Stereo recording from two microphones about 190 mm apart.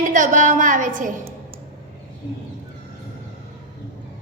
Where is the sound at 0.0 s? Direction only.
40° right (ahead or behind).